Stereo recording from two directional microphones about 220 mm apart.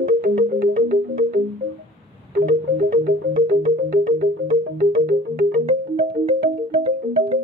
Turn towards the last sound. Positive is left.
turn(degrees=-30)  # may be behind; listen again after turning